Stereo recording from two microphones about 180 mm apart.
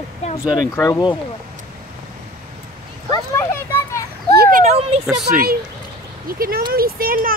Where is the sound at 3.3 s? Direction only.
15° left (ahead or behind).